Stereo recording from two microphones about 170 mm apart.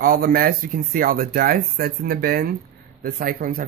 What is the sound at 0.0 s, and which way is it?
Speech, 60° right (ahead or behind).